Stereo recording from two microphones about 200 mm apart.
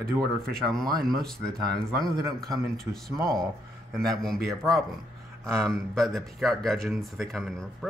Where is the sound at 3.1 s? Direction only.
15° right (ahead or behind).